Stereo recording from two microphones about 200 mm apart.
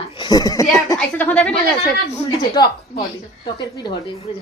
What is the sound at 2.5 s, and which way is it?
Speech, 20° left (ahead or behind).